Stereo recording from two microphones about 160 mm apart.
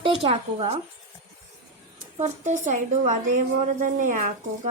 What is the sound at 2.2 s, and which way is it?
A woman's voice, 50° right (ahead or behind).